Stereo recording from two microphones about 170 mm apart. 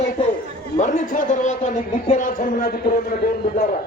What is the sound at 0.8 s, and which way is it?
A man's voice, 50° left (ahead or behind).